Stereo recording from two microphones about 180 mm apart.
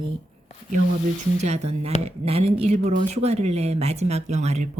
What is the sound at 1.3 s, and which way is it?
Speech, 35° right (ahead or behind).